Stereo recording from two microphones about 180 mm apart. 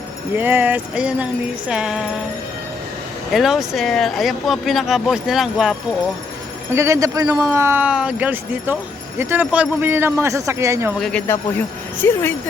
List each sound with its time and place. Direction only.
0.3 s speech: 10° right (ahead or behind)
3.3 s speech: centre (ahead or behind)
6.7 s speech: 15° right (ahead or behind)
11.0 s speech: 10° left (ahead or behind)